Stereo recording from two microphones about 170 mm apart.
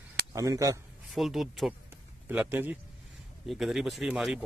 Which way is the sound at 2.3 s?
10° right (ahead or behind).